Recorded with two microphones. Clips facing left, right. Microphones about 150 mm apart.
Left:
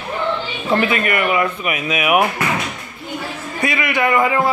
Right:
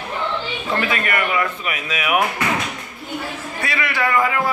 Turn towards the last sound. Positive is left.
turn(degrees=20)  # may be behind; listen again after turning